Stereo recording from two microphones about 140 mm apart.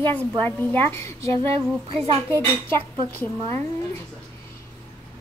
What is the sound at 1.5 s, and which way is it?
Speech, 40° right (ahead or behind).